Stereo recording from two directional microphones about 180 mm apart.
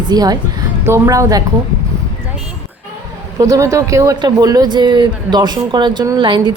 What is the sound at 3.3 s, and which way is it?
Speech, 20° right (ahead or behind).